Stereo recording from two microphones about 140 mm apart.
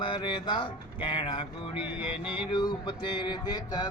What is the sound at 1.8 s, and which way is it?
Music, 10° right (ahead or behind).